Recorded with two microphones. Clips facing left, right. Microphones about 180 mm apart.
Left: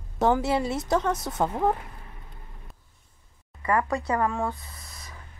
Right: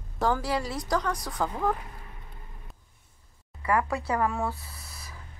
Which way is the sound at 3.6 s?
5° right (ahead or behind).